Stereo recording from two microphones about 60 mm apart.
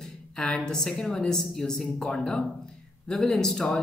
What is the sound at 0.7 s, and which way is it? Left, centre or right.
Speech, centre.